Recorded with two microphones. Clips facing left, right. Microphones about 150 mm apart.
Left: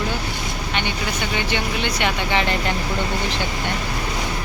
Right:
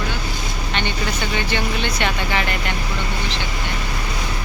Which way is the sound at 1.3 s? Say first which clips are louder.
Even; 15° left (ahead or behind).